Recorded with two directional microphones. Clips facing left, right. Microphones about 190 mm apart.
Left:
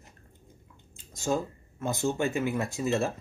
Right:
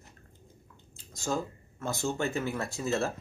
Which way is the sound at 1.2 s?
15° left (ahead or behind).